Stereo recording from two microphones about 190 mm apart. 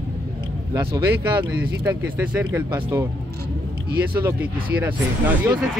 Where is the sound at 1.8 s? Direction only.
10° right (ahead or behind).